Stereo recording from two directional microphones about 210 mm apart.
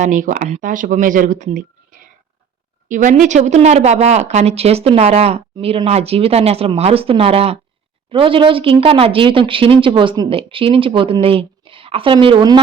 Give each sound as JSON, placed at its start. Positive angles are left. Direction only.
{"t": 0.0, "sound": "speech", "side_deg": -40}
{"t": 2.9, "sound": "speech", "side_deg": -40}